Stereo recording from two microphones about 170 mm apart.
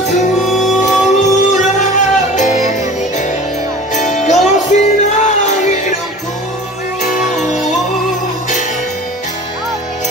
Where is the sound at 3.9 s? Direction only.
45° left (ahead or behind).